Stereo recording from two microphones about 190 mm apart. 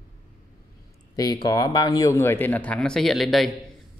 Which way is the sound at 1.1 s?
20° left (ahead or behind).